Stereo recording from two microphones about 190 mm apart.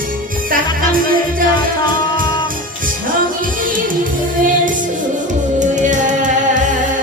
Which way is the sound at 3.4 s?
45° right (ahead or behind).